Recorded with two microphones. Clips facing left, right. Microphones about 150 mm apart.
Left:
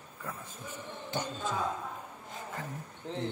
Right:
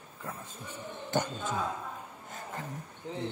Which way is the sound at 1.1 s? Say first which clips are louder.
Right 3 dB; 50° right (ahead or behind).